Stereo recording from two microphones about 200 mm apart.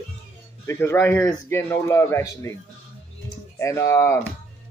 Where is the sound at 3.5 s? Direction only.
15° left (ahead or behind).